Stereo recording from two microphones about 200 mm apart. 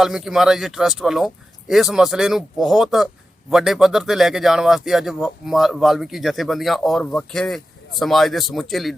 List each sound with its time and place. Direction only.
0.0 s speech: centre (ahead or behind)